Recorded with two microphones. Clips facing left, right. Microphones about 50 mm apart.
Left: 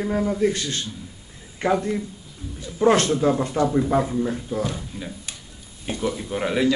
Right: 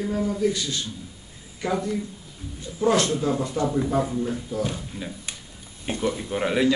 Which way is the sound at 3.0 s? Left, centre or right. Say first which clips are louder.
Left 4 dB; left.